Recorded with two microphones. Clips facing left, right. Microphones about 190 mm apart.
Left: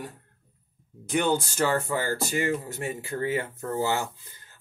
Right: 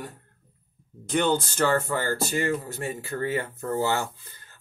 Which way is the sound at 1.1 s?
10° left (ahead or behind).